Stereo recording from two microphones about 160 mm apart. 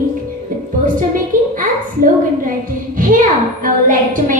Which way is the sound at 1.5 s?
55° right (ahead or behind).